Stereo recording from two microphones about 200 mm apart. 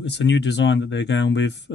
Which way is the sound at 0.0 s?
60° left (ahead or behind).